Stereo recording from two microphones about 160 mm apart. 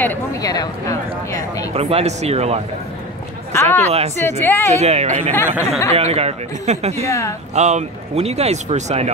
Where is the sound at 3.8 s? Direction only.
45° right (ahead or behind).